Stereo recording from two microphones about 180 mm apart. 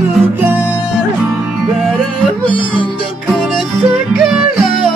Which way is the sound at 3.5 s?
Centre (ahead or behind).